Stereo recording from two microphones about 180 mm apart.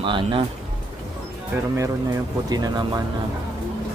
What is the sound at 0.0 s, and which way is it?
Speech, 30° right (ahead or behind).